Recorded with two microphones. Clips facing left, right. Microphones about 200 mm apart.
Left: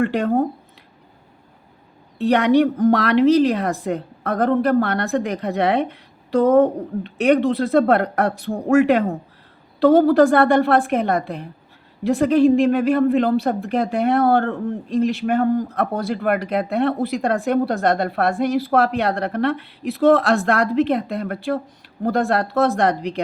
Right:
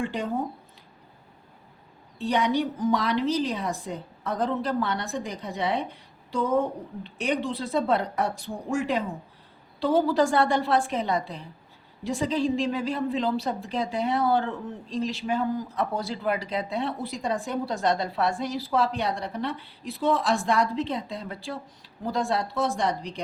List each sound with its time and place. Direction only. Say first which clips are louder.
0.0 s speech: left 10 dB; 65° left (ahead or behind)
2.1 s speech: left 9 dB; 65° left (ahead or behind)